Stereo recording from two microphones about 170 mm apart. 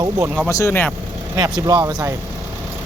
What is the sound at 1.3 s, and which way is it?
Speech, 20° right (ahead or behind).